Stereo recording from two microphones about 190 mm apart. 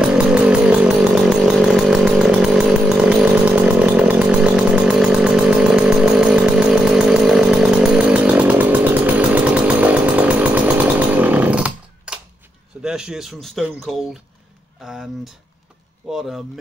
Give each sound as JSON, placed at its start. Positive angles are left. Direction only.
{"t": 0.0, "sound": "chainsaw", "side_deg": -5}
{"t": 12.8, "sound": "a man's voice", "side_deg": -5}
{"t": 14.9, "sound": "a sound", "side_deg": 0}
{"t": 16.1, "sound": "speech", "side_deg": 0}